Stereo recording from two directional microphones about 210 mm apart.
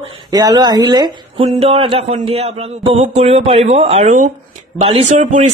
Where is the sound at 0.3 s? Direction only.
20° right (ahead or behind).